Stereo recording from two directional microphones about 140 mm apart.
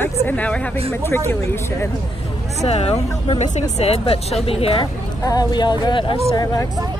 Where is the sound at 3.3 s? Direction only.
50° left (ahead or behind).